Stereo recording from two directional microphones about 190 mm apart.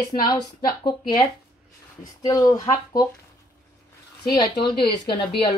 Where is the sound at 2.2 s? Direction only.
20° left (ahead or behind).